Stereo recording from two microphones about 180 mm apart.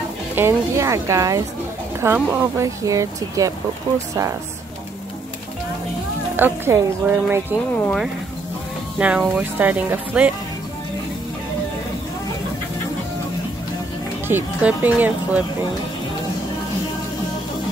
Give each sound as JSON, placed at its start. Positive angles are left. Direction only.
{"t": 0.4, "sound": "speech", "side_deg": -15}
{"t": 6.3, "sound": "speech", "side_deg": -10}
{"t": 7.7, "sound": "speech", "side_deg": 10}
{"t": 8.9, "sound": "speech", "side_deg": -5}
{"t": 14.2, "sound": "speech", "side_deg": -10}